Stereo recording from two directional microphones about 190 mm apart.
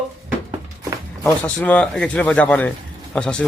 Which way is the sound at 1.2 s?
10° left (ahead or behind).